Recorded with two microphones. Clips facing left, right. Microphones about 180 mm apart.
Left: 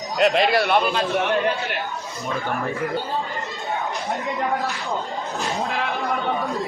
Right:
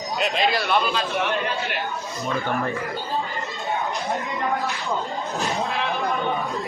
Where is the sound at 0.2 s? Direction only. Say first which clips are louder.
Left 6 dB; 65° left (ahead or behind).